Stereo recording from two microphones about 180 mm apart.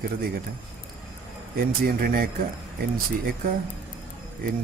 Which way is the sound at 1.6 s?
55° right (ahead or behind).